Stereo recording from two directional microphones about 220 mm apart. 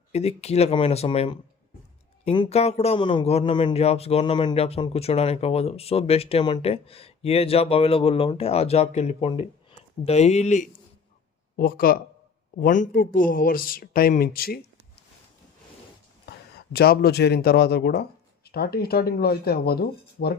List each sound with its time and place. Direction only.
0.1 s a man's voice: 30° left (ahead or behind); by 14.6 s 45° left (ahead or behind)
16.7 s speech: 45° left (ahead or behind)